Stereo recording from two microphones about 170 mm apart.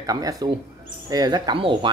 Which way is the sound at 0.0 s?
20° right (ahead or behind).